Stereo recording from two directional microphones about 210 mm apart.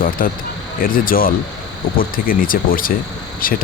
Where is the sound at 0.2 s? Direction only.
40° left (ahead or behind).